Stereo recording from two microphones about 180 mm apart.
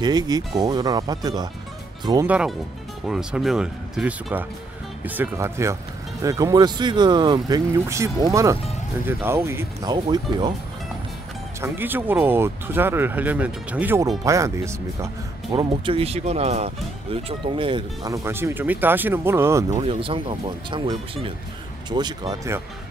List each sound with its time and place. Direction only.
0.0 s speech: 20° right (ahead or behind)
2.2 s speech: 5° right (ahead or behind)
10.0 s speech: 25° right (ahead or behind)
11.6 s speech: 10° right (ahead or behind)
15.5 s speech: 25° right (ahead or behind)
18.1 s speech: 15° right (ahead or behind)
19.8 s speech: 30° right (ahead or behind)